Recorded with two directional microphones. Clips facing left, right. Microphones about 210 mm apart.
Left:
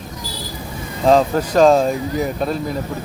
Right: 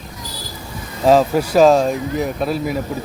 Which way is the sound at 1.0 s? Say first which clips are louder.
Right 1 dB; 5° right (ahead or behind).